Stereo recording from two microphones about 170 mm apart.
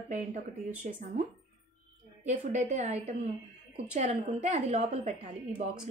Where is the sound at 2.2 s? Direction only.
40° right (ahead or behind).